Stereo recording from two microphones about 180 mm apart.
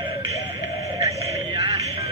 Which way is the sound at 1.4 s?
30° right (ahead or behind).